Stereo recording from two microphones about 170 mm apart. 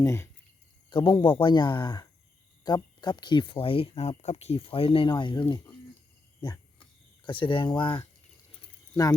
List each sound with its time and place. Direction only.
0.0 s speech: 15° left (ahead or behind)
0.9 s speech: 30° left (ahead or behind)
6.4 s cricket: 20° left (ahead or behind)
7.3 s speech: 30° left (ahead or behind)
8.6 s a sound: 20° left (ahead or behind)